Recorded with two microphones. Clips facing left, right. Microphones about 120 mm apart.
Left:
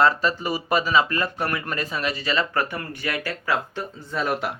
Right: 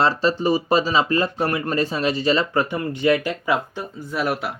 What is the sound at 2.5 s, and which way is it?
Speech, 20° right (ahead or behind).